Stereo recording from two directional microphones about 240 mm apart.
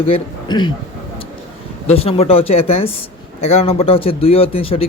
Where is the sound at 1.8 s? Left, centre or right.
Left.